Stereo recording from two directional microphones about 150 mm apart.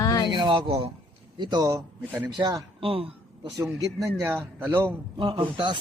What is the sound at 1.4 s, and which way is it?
Speech, 25° right (ahead or behind).